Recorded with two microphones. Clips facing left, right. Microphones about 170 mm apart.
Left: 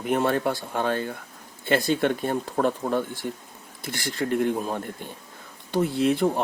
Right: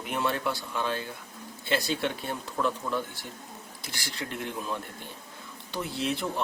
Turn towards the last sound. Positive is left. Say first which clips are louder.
# left 9 dB
turn(degrees=50)  # may be behind; listen again after turning